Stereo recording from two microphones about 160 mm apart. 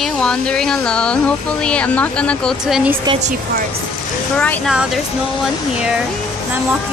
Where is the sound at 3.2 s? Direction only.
50° right (ahead or behind).